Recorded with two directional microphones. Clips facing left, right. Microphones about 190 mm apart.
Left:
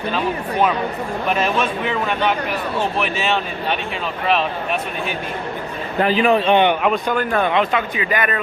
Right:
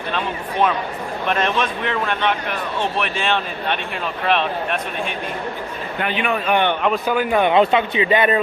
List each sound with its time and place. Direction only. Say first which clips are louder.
1.3 s speech: left 1 dB; 5° left (ahead or behind)
6.0 s a man's voice: left 7 dB; 35° left (ahead or behind)
6.8 s speech: even; 5° right (ahead or behind)
7.4 s a man's voice: right 3 dB; 25° right (ahead or behind)